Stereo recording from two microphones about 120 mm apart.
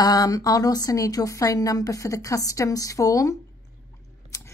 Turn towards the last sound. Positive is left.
turn(degrees=30)  # may be behind; listen again after turning